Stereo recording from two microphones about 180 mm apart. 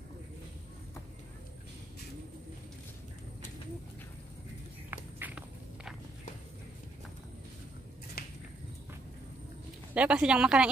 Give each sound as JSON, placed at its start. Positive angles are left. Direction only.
{"t": 4.9, "sound": "walk", "side_deg": -10}
{"t": 8.2, "sound": "a sound", "side_deg": 55}
{"t": 9.9, "sound": "speech", "side_deg": -5}